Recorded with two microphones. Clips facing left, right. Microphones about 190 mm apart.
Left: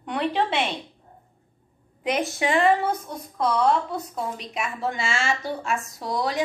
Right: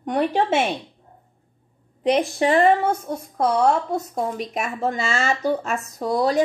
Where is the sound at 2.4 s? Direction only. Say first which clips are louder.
Right 2 dB; 40° right (ahead or behind).